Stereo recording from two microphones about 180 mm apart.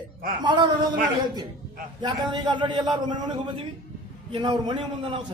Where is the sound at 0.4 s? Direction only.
25° right (ahead or behind).